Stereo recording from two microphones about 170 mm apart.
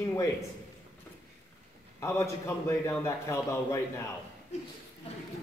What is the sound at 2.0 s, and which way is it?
A man's voice, 15° left (ahead or behind).